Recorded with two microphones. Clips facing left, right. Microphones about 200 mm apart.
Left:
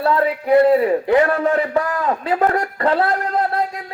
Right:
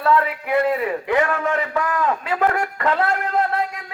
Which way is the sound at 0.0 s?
30° left (ahead or behind).